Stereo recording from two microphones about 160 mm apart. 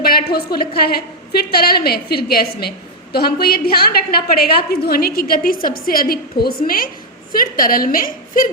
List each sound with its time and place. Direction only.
0.0 s a woman's voice: 70° left (ahead or behind)